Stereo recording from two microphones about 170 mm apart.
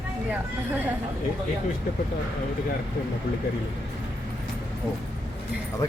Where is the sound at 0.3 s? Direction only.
10° right (ahead or behind).